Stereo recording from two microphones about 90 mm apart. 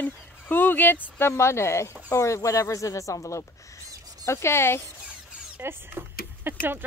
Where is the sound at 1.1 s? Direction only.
30° left (ahead or behind).